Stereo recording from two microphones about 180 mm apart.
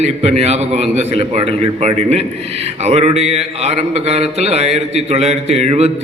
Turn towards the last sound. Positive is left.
turn(degrees=-35)  # may be behind; listen again after turning